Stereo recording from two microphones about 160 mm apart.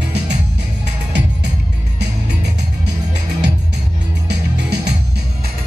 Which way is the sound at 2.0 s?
90° right.